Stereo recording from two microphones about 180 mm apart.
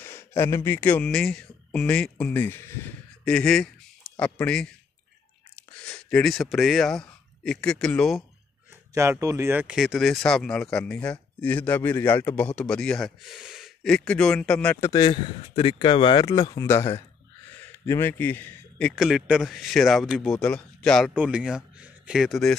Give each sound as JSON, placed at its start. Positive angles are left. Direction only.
{"t": 0.0, "sound": "speech", "side_deg": 15}
{"t": 8.9, "sound": "speech", "side_deg": -15}
{"t": 14.9, "sound": "speech", "side_deg": 25}
{"t": 21.1, "sound": "speech", "side_deg": -5}